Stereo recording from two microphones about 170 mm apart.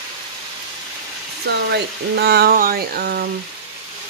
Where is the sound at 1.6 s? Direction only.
75° right (ahead or behind).